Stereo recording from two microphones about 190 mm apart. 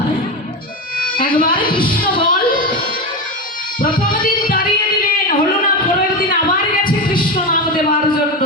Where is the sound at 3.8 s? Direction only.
45° left (ahead or behind).